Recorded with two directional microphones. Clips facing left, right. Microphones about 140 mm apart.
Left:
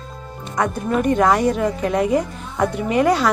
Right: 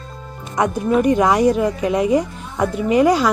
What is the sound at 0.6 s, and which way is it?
Speech, 5° right (ahead or behind).